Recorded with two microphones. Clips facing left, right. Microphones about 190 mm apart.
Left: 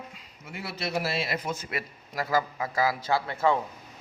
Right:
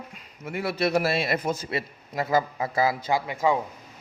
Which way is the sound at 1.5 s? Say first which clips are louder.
Right 5 dB; 35° right (ahead or behind).